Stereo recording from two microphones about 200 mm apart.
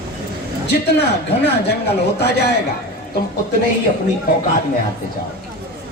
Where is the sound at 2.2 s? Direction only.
55° left (ahead or behind).